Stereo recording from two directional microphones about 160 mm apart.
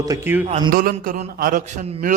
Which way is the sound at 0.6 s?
60° right (ahead or behind).